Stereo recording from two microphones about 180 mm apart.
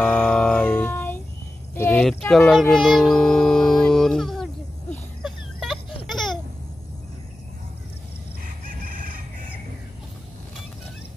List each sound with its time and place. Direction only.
0.0 s music: 5° left (ahead or behind)
1.8 s a sound: 10° left (ahead or behind)
6.1 s baby laughter: centre (ahead or behind)
8.6 s chicken: 50° right (ahead or behind)